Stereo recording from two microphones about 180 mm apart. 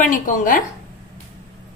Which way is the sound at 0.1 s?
45° left (ahead or behind).